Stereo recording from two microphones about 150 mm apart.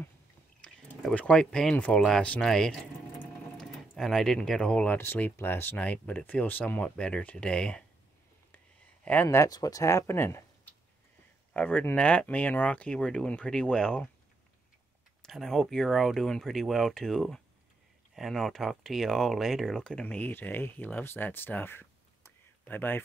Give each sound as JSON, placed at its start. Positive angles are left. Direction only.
{"t": 0.6, "sound": "speech", "side_deg": 5}
{"t": 9.0, "sound": "speech", "side_deg": 10}
{"t": 11.5, "sound": "speech", "side_deg": 10}
{"t": 15.2, "sound": "speech", "side_deg": 0}